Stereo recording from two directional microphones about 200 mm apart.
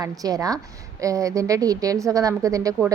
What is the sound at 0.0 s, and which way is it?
Speech, 20° right (ahead or behind).